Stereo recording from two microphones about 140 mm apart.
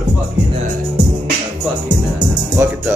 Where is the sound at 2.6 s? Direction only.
15° right (ahead or behind).